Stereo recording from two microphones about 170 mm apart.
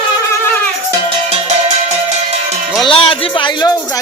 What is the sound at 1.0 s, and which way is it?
Music, 35° right (ahead or behind).